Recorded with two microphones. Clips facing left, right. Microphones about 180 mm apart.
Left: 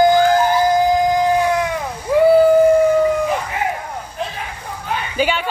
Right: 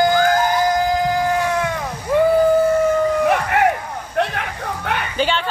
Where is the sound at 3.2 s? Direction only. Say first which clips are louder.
Right 4 dB; 70° right (ahead or behind).